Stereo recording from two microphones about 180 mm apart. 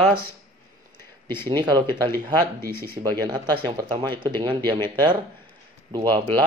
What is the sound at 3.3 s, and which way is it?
Speech, 25° right (ahead or behind).